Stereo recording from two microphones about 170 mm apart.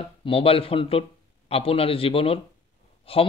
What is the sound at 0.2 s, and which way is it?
A man's voice, 35° left (ahead or behind).